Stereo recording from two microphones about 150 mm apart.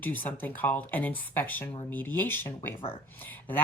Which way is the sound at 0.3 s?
10° left (ahead or behind).